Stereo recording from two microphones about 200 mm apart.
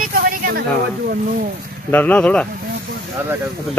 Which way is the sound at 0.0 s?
45° right (ahead or behind).